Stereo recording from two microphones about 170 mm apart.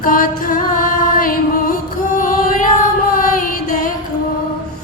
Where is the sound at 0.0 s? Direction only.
55° left (ahead or behind).